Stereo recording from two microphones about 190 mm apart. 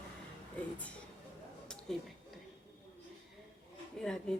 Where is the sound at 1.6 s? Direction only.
5° left (ahead or behind).